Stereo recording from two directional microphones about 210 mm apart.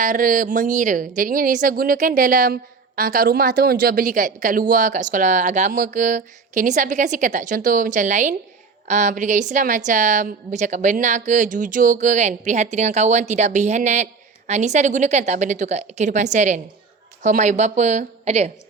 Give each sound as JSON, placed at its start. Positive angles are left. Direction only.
{"t": 0.0, "sound": "a woman's voice", "side_deg": -40}